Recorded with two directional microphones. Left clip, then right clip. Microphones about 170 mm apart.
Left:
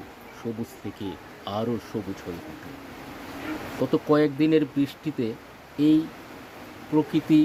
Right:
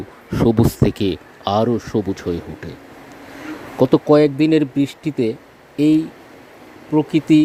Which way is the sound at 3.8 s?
40° right (ahead or behind).